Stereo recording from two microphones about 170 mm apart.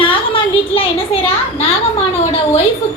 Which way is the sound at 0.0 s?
30° left (ahead or behind).